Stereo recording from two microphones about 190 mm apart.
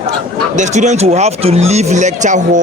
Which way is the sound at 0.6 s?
40° right (ahead or behind).